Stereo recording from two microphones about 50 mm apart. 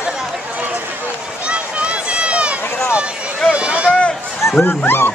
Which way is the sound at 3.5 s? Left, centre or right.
Right.